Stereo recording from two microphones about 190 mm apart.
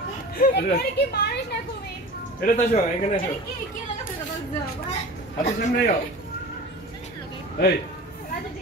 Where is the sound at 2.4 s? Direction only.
40° left (ahead or behind).